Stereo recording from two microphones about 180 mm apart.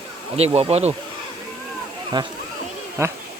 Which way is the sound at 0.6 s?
35° right (ahead or behind).